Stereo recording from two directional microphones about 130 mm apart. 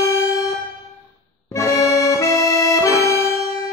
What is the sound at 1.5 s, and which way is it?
Accordion, 25° left (ahead or behind).